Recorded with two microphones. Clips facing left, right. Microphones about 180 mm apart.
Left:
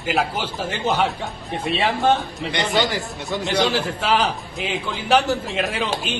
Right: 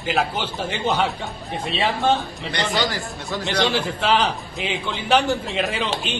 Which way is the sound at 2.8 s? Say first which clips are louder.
Left 1 dB; 20° left (ahead or behind).